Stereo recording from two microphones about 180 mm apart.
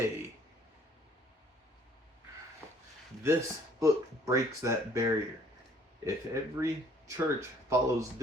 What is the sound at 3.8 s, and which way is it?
Speech, 20° right (ahead or behind).